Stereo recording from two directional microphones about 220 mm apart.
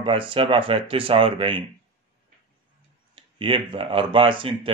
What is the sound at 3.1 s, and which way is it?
A man's voice, 25° right (ahead or behind).